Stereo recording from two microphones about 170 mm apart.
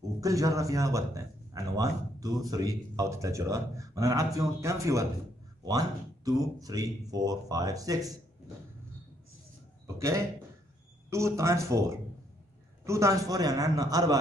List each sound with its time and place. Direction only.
0.2 s a man's voice: 20° right (ahead or behind)
9.9 s a man's voice: 15° right (ahead or behind)